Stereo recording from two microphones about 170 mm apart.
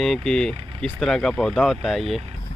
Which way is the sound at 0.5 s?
30° right (ahead or behind).